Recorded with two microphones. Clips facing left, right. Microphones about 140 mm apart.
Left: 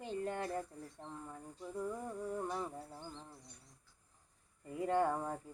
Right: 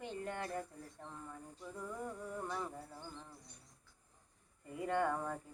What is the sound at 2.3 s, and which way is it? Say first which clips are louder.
Speech: left 3 dB; 25° left (ahead or behind).